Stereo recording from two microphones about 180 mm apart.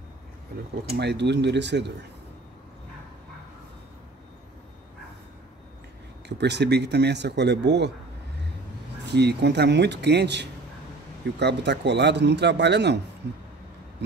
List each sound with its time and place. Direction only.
0.9 s a man's voice: 70° right (ahead or behind)
6.2 s a man's voice: 70° right (ahead or behind)
9.0 s a man's voice: 70° right (ahead or behind)